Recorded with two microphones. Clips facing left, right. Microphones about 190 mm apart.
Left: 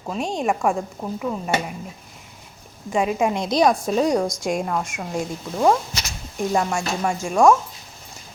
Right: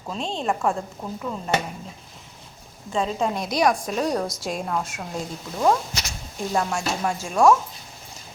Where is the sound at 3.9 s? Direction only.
Centre (ahead or behind).